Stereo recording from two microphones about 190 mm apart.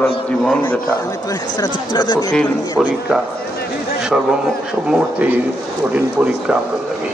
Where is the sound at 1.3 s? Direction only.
20° left (ahead or behind).